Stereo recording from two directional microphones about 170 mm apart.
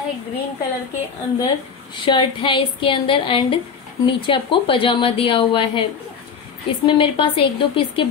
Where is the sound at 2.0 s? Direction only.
30° left (ahead or behind).